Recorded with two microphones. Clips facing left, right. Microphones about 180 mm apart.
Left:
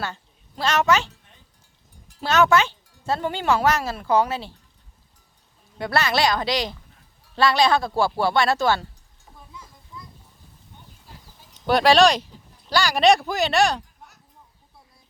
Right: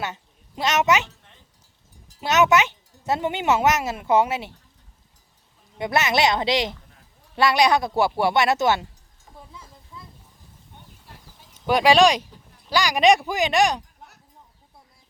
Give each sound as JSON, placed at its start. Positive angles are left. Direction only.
{"t": 0.0, "sound": "a woman's voice", "side_deg": -20}
{"t": 2.2, "sound": "a child's voice", "side_deg": -20}
{"t": 5.7, "sound": "a child's voice", "side_deg": -20}
{"t": 11.0, "sound": "a sound", "side_deg": 0}
{"t": 12.7, "sound": "speech", "side_deg": -15}